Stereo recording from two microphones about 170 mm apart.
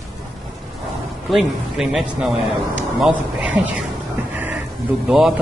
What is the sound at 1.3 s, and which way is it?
A man's voice, centre (ahead or behind).